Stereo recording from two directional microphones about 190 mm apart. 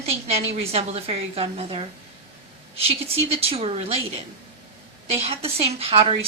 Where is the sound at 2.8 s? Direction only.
30° right (ahead or behind).